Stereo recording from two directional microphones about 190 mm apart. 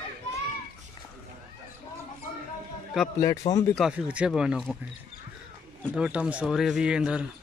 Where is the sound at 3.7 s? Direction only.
5° right (ahead or behind).